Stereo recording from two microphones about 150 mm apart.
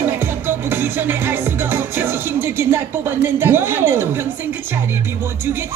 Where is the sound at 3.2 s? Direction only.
15° right (ahead or behind).